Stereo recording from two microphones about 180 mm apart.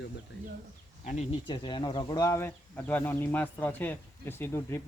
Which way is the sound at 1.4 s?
25° left (ahead or behind).